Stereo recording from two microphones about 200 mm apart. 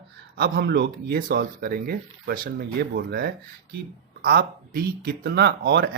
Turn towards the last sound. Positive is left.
turn(degrees=-55)  # may be behind; listen again after turning